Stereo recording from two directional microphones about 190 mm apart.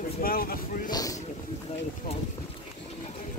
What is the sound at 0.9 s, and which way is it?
Speech, 20° left (ahead or behind).